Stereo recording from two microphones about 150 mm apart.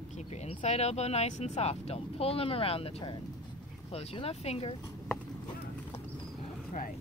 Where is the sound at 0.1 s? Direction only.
50° left (ahead or behind).